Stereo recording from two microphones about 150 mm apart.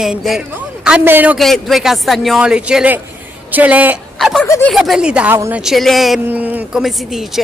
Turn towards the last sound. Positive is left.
turn(degrees=0)  # may be behind; listen again after turning